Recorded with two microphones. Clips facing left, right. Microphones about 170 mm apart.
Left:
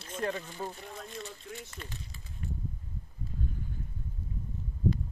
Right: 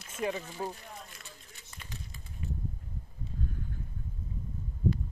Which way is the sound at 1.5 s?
90° left.